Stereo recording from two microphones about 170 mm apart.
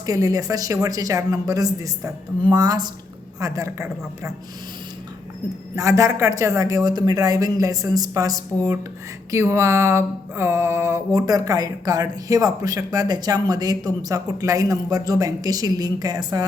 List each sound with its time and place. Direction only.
0.0 s mantra: 20° right (ahead or behind)
3.4 s a woman's voice: 20° right (ahead or behind)
5.7 s mantra: 20° right (ahead or behind)